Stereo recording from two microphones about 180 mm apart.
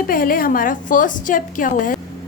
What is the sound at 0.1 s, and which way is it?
A woman's voice, 50° left (ahead or behind).